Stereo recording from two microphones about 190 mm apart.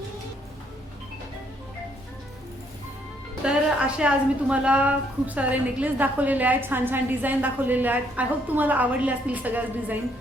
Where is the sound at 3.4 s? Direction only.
5° right (ahead or behind).